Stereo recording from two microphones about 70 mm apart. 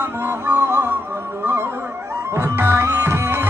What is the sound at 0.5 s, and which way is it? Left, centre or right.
Music, right.